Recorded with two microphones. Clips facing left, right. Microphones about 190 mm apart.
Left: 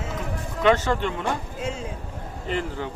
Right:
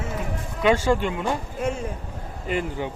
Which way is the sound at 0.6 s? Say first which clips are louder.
Right 1 dB; 10° right (ahead or behind).